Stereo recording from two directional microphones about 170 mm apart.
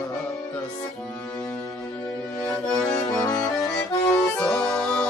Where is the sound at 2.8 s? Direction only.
20° left (ahead or behind).